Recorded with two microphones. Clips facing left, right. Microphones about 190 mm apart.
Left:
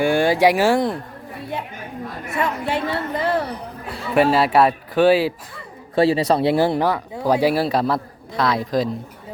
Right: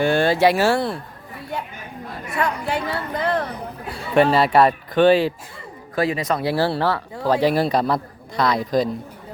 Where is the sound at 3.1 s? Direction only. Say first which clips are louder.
Right 1 dB; 5° left (ahead or behind).